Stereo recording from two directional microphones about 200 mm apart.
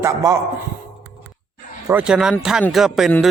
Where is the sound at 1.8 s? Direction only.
5° right (ahead or behind).